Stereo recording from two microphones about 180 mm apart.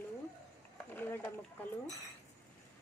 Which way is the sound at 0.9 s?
10° left (ahead or behind).